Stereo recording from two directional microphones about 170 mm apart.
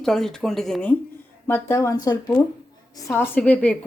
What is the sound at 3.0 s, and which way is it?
Speech, 15° left (ahead or behind).